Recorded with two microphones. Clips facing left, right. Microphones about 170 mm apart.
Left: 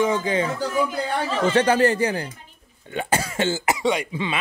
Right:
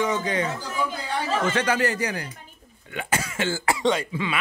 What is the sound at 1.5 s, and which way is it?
Speech, 30° left (ahead or behind).